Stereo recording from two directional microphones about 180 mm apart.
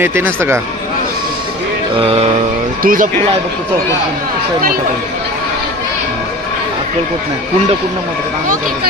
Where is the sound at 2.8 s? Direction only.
50° right (ahead or behind).